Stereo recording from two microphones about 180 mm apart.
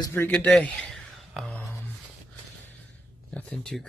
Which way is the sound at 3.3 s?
5° left (ahead or behind).